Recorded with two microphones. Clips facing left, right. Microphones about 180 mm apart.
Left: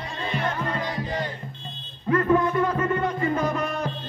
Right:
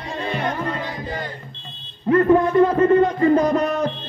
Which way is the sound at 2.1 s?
30° right (ahead or behind).